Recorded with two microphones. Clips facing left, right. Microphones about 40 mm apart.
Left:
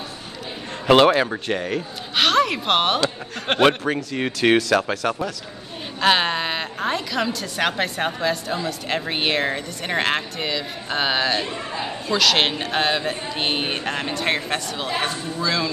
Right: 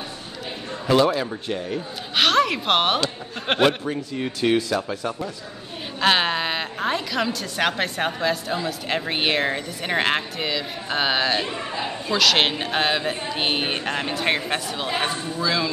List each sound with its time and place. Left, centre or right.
0.8 s a man's voice: left
1.1 s speech: left
2.1 s speech: centre
3.8 s speech: left
5.9 s a woman's voice: centre